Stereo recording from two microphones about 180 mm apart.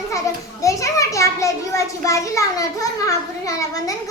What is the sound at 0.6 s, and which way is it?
A child's voice, 15° left (ahead or behind).